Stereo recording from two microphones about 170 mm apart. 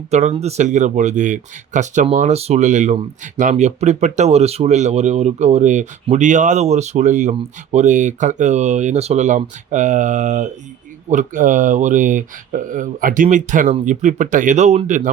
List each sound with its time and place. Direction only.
0.1 s speech: 40° right (ahead or behind)